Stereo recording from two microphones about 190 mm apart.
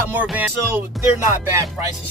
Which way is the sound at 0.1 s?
10° right (ahead or behind).